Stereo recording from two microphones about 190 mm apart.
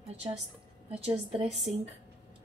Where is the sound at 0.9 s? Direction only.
30° right (ahead or behind).